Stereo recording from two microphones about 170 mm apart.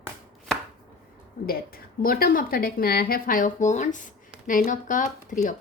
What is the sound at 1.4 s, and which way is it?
A woman's voice, 60° left (ahead or behind).